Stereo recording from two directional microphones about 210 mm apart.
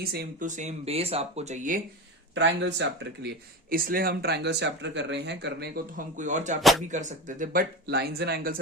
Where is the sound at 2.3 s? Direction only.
55° right (ahead or behind); by 6.6 s 35° right (ahead or behind).